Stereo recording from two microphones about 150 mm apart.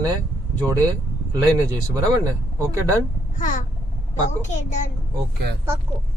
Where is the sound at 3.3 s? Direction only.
60° left (ahead or behind).